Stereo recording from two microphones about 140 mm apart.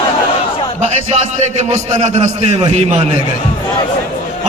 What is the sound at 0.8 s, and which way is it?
A man's voice, 55° right (ahead or behind).